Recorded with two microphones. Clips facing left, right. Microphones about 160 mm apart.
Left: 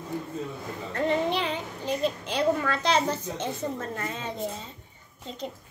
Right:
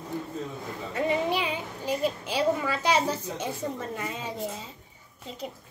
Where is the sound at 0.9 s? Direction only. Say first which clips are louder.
Left 1 dB; 10° right (ahead or behind).